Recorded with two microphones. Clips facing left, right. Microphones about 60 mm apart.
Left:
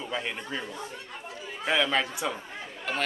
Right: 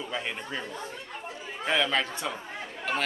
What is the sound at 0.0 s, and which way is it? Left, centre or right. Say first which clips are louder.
Speech: left 1 dB; centre.